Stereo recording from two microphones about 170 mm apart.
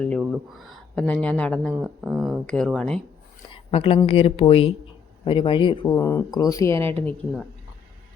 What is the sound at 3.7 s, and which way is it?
Speech, 35° left (ahead or behind).